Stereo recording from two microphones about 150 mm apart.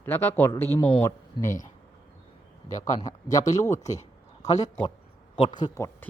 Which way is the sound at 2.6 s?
55° left (ahead or behind).